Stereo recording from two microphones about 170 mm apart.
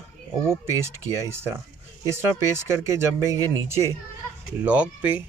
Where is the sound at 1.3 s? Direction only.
15° right (ahead or behind).